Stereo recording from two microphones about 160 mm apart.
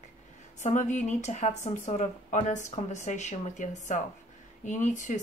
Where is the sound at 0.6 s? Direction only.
50° left (ahead or behind).